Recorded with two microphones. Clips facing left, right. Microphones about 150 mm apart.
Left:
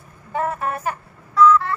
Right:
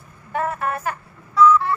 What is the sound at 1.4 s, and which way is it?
Vehicle, 5° right (ahead or behind).